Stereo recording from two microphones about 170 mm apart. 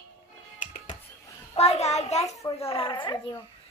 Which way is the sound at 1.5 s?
40° left (ahead or behind).